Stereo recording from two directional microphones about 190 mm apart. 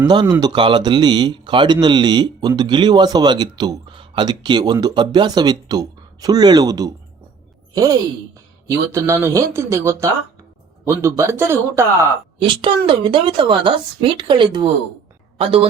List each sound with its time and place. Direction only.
0.1 s speech: 20° right (ahead or behind)
11.2 s speech: 15° right (ahead or behind)
12.5 s speech: 25° right (ahead or behind)